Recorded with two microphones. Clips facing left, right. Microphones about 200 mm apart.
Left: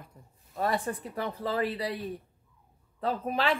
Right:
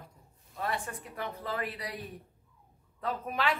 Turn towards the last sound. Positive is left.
turn(degrees=30)  # may be behind; listen again after turning